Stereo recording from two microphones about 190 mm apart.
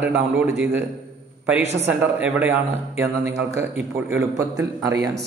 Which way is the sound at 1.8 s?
10° right (ahead or behind).